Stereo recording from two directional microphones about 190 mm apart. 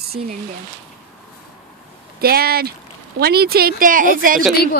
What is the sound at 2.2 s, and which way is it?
Speech, 55° right (ahead or behind).